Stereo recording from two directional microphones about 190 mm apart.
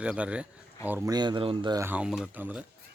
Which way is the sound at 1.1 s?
25° right (ahead or behind).